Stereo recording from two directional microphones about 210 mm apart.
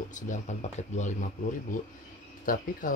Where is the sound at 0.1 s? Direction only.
35° left (ahead or behind).